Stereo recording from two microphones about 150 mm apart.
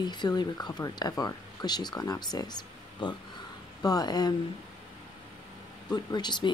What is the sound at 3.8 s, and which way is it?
Speech, 25° left (ahead or behind).